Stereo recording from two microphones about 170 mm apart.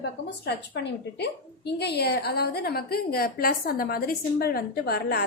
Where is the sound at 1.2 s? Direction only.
75° left (ahead or behind).